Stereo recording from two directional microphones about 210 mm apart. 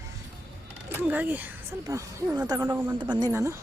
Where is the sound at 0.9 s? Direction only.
10° right (ahead or behind).